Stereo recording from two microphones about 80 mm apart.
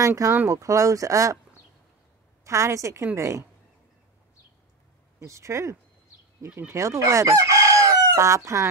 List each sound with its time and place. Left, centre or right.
0.0 s a woman's voice: right
2.4 s a woman's voice: right
5.2 s a woman's voice: right
6.7 s chicken: right